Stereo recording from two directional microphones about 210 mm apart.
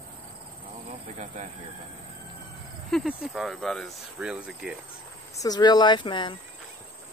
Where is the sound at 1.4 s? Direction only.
35° right (ahead or behind).